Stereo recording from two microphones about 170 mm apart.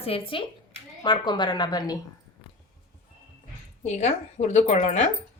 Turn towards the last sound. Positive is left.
turn(degrees=40)  # may be behind; listen again after turning